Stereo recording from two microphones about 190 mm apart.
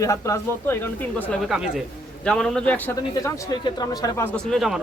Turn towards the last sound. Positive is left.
turn(degrees=0)  # may be behind; listen again after turning